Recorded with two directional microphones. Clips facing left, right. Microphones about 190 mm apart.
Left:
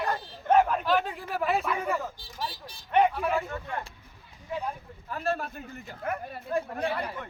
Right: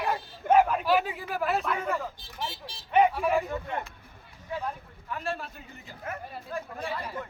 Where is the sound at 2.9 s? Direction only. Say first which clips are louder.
Right 1 dB; 5° right (ahead or behind).